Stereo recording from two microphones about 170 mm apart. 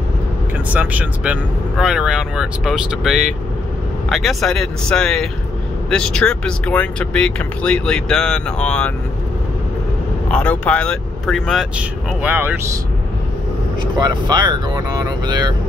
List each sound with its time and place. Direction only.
0.7 s speech: 10° right (ahead or behind)
10.2 s speech: 5° left (ahead or behind); by 12.5 s 10° right (ahead or behind)
13.9 s speech: 25° right (ahead or behind)